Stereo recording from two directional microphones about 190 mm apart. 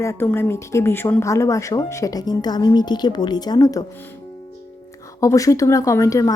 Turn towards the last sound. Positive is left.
turn(degrees=15)  # may be behind; listen again after turning